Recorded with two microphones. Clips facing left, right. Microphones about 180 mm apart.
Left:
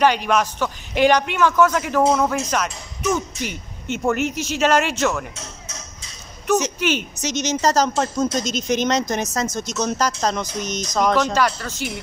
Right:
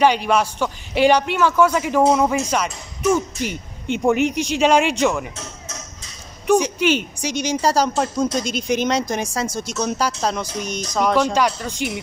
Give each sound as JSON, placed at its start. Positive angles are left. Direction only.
{"t": 0.3, "sound": "speech", "side_deg": -10}
{"t": 3.3, "sound": "speech", "side_deg": -50}
{"t": 4.4, "sound": "speech", "side_deg": -15}
{"t": 6.4, "sound": "speech", "side_deg": -10}